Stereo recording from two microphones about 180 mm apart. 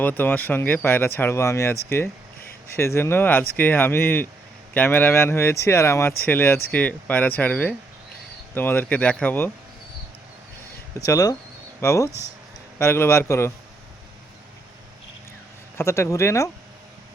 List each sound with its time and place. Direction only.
0.0 s speech: 10° left (ahead or behind)
10.9 s speech: 20° left (ahead or behind)
15.8 s speech: 15° left (ahead or behind)